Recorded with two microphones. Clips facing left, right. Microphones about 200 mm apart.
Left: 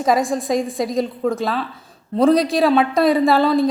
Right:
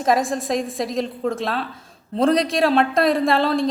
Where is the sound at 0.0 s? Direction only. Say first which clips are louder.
Left 2 dB; centre (ahead or behind).